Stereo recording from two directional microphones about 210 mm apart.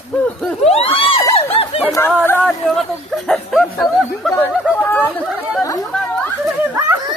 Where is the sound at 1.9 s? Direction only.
10° left (ahead or behind).